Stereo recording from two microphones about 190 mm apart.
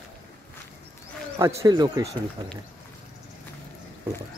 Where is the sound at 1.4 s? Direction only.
20° right (ahead or behind).